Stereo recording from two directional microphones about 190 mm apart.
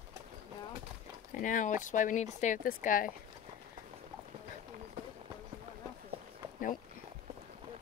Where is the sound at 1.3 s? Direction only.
45° left (ahead or behind).